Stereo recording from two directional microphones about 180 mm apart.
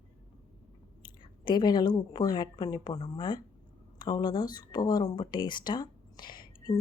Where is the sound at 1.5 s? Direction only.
25° left (ahead or behind).